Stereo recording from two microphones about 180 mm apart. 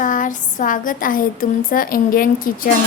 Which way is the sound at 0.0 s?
45° left (ahead or behind).